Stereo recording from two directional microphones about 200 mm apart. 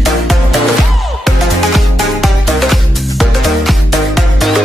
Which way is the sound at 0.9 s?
Centre (ahead or behind).